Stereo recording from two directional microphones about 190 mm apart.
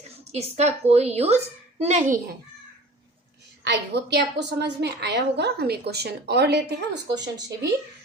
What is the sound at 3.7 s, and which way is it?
A woman's voice, 65° right (ahead or behind).